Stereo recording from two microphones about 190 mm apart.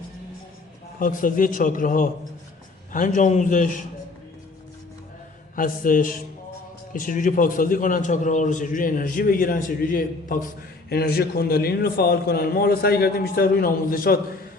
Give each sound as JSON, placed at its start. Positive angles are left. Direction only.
{"t": 0.9, "sound": "a man's voice", "side_deg": 45}
{"t": 5.5, "sound": "a man's voice", "side_deg": 45}